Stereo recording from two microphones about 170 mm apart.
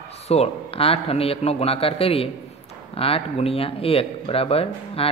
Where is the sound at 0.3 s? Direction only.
35° left (ahead or behind).